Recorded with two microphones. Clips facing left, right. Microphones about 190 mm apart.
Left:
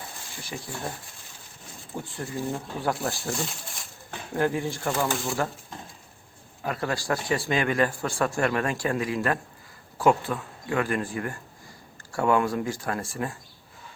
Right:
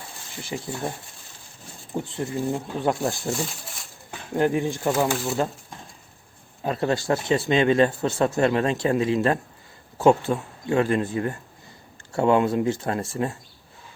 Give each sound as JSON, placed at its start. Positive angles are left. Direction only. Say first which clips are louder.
{"t": 0.4, "sound": "speech", "louder": "right 5 dB", "side_deg": -25}
{"t": 2.0, "sound": "speech", "louder": "right 4 dB", "side_deg": -20}
{"t": 4.4, "sound": "speech", "louder": "right 4 dB", "side_deg": -20}
{"t": 5.1, "sound": "speech", "louder": "right 3 dB", "side_deg": 0}
{"t": 6.6, "sound": "speech", "louder": "right 5 dB", "side_deg": -25}